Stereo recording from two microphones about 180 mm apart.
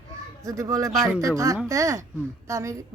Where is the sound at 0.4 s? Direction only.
20° right (ahead or behind).